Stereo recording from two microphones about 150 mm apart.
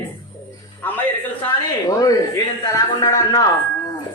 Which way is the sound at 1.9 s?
25° left (ahead or behind).